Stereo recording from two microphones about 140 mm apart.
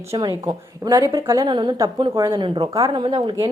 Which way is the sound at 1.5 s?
30° right (ahead or behind).